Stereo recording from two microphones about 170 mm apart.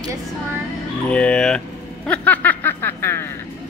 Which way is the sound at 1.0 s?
5° left (ahead or behind).